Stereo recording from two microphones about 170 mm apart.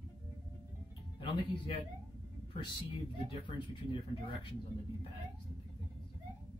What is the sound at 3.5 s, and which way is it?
Speech, 30° left (ahead or behind).